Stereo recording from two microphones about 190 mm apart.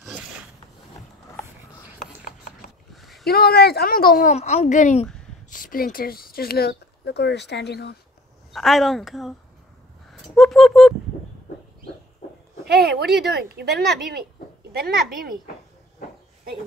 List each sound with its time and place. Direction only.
2.0 s a sound: 45° left (ahead or behind)
2.9 s a sound: centre (ahead or behind)
3.3 s speech: 55° left (ahead or behind)
8.5 s speech: centre (ahead or behind)
10.3 s speech: centre (ahead or behind)
12.6 s a child's voice: 60° right (ahead or behind)